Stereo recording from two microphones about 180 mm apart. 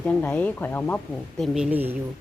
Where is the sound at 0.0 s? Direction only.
5° left (ahead or behind).